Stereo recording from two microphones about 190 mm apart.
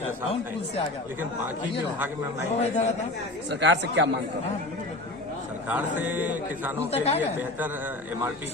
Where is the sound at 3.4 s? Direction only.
65° right (ahead or behind).